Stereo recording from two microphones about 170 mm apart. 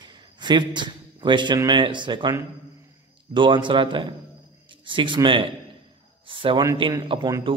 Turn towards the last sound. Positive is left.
turn(degrees=-30)  # may be behind; listen again after turning